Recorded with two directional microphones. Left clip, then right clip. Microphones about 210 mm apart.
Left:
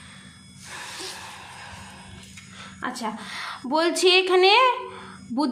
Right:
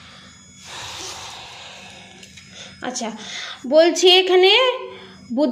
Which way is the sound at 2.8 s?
Centre (ahead or behind).